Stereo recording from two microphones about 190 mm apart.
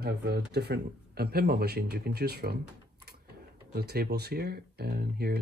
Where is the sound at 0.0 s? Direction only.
60° right (ahead or behind).